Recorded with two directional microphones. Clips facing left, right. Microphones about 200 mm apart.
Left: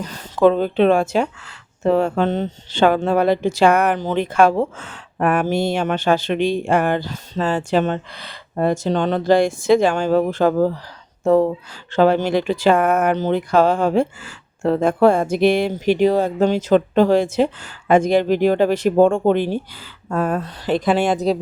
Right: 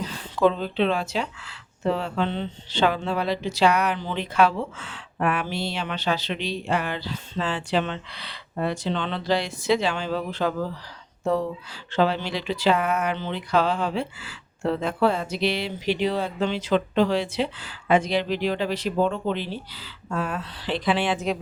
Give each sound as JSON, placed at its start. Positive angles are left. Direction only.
{"t": 0.0, "sound": "speech", "side_deg": 45}